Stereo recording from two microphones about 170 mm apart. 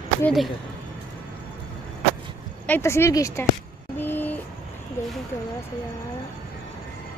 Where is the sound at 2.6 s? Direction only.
15° left (ahead or behind).